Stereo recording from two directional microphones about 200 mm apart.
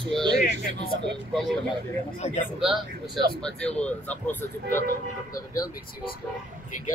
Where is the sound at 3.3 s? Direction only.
5° left (ahead or behind).